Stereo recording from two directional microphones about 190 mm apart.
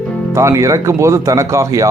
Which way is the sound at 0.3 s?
15° right (ahead or behind).